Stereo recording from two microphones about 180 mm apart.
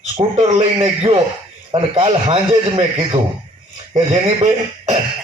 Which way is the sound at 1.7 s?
30° right (ahead or behind).